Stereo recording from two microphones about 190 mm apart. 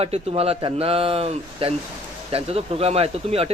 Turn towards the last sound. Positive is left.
turn(degrees=-30)  # may be behind; listen again after turning